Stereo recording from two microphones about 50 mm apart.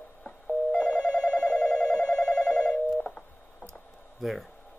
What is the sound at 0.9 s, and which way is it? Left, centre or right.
Telephone bell ringing, centre.